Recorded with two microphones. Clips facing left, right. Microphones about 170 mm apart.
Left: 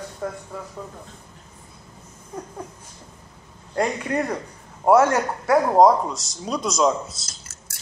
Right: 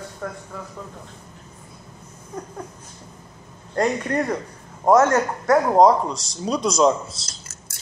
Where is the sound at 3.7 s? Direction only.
10° left (ahead or behind).